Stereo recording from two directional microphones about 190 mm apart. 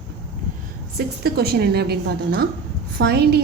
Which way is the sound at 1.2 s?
55° right (ahead or behind).